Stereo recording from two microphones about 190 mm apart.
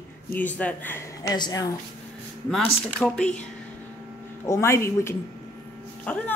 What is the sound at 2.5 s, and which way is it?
Speech, 5° left (ahead or behind).